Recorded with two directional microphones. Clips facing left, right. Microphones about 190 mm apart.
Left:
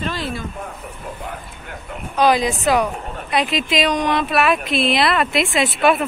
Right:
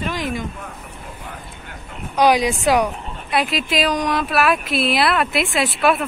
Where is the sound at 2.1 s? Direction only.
15° right (ahead or behind).